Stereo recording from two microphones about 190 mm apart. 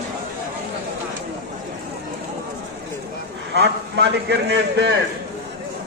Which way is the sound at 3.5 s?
60° right (ahead or behind).